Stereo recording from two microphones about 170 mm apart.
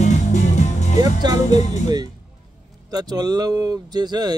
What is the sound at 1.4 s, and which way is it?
Speech, 45° left (ahead or behind).